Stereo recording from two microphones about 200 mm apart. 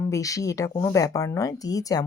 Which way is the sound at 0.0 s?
15° left (ahead or behind).